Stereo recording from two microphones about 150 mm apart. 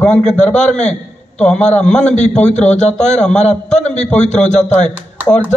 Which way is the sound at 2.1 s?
50° left (ahead or behind).